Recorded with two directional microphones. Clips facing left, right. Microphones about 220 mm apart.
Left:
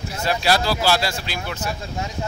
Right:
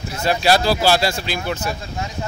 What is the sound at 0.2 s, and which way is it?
Speech, 25° right (ahead or behind).